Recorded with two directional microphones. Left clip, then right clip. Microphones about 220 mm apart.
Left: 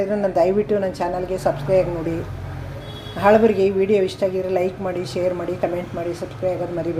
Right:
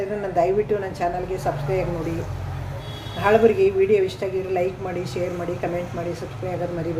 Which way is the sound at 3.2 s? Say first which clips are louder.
Left 2 dB; 30° left (ahead or behind).